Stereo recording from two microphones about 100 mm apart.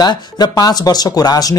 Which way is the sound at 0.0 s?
40° left (ahead or behind).